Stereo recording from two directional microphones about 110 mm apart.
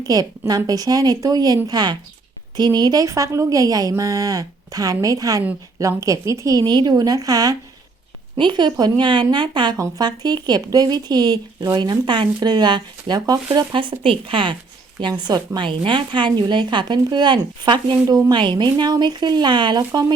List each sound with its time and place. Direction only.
0.1 s speech: 35° right (ahead or behind)
8.4 s speech: 45° right (ahead or behind)
9.7 s speech: 30° right (ahead or behind)
14.0 s speech: 55° right (ahead or behind); by 20.1 s 40° right (ahead or behind)